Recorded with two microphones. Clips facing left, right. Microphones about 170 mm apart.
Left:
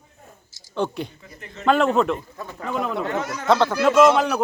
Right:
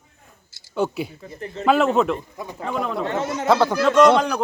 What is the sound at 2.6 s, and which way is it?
Speech, centre (ahead or behind).